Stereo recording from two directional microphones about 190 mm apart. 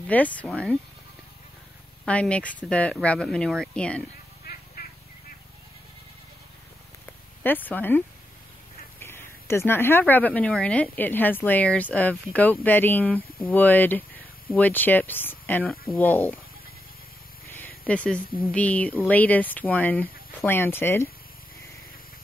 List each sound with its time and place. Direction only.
0.1 s speech: 10° left (ahead or behind)
2.0 s speech: 5° left (ahead or behind)
4.5 s a sound: 55° left (ahead or behind)
7.4 s speech: 10° left (ahead or behind)
9.0 s speech: 15° left (ahead or behind)
17.8 s speech: 5° left (ahead or behind)